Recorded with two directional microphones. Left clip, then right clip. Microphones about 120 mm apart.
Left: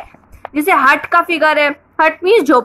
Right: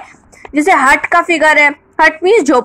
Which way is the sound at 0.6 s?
25° right (ahead or behind).